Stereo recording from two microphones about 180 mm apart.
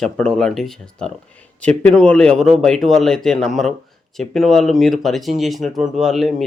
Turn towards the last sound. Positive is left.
turn(degrees=0)  # may be behind; listen again after turning